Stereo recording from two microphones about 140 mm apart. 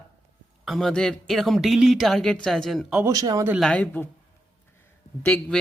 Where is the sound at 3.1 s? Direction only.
25° right (ahead or behind).